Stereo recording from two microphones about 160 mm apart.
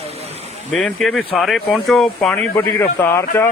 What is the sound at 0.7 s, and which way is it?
A man's voice, 5° left (ahead or behind).